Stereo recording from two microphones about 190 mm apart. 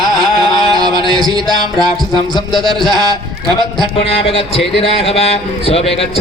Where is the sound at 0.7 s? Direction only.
20° right (ahead or behind).